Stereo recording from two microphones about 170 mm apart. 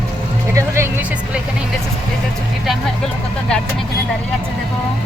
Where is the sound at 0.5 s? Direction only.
15° right (ahead or behind).